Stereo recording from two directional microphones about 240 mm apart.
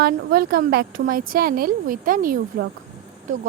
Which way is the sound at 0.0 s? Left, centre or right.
Right.